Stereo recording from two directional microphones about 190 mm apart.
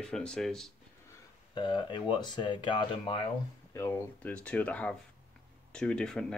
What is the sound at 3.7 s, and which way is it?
Speech, 10° left (ahead or behind).